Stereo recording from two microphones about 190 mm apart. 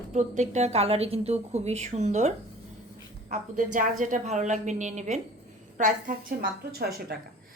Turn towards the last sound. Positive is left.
turn(degrees=-55)  # may be behind; listen again after turning